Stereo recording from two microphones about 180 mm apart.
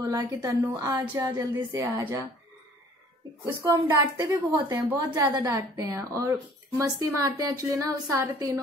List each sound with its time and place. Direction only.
0.0 s a woman's voice: 20° right (ahead or behind)
3.6 s a woman's voice: 25° right (ahead or behind)